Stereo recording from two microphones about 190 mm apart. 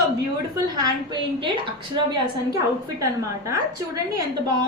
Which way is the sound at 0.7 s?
25° right (ahead or behind).